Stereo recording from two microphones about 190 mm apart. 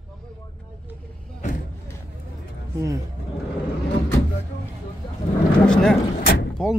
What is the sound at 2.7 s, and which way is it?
Music, 15° right (ahead or behind).